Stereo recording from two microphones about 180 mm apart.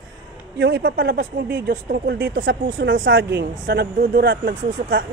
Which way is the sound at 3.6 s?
60° right (ahead or behind).